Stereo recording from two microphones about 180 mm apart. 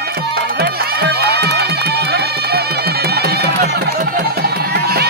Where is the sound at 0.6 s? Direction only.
60° right (ahead or behind).